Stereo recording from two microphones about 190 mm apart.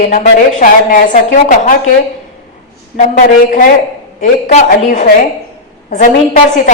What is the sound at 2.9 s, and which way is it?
A woman's voice, 40° left (ahead or behind).